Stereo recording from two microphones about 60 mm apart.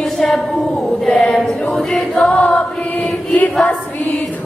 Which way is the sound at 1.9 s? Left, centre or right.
Centre.